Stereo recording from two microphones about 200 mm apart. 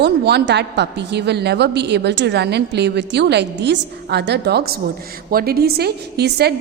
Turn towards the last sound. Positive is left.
turn(degrees=-55)  # may be behind; listen again after turning